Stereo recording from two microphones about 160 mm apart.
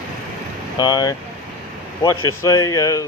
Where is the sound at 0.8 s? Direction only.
25° left (ahead or behind).